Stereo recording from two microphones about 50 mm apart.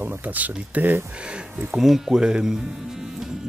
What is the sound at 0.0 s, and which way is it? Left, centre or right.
Speech, right.